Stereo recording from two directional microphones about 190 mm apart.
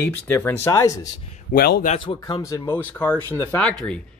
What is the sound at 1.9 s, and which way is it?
Speech, 25° left (ahead or behind).